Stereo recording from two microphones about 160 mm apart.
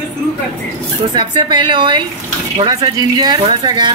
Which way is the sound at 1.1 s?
30° right (ahead or behind).